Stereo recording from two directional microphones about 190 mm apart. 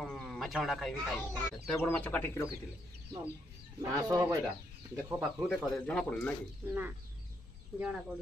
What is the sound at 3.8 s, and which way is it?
Speech, 20° right (ahead or behind).